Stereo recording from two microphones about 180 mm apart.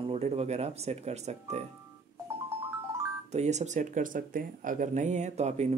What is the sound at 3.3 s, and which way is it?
Speech, 40° right (ahead or behind).